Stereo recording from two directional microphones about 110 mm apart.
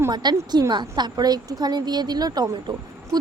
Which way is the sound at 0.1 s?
40° right (ahead or behind).